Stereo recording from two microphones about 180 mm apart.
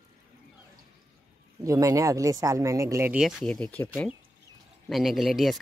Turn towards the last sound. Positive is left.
turn(degrees=0)  # may be behind; listen again after turning